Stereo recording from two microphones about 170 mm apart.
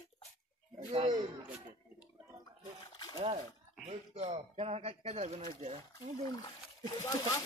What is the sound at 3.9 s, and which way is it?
Speech, 45° right (ahead or behind).